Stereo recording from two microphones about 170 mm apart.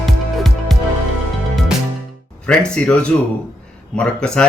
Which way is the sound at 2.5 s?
5° left (ahead or behind).